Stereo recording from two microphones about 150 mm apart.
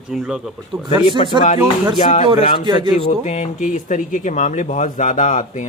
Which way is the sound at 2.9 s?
50° left (ahead or behind).